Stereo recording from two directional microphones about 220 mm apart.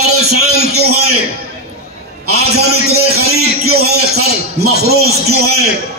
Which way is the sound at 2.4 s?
45° right (ahead or behind).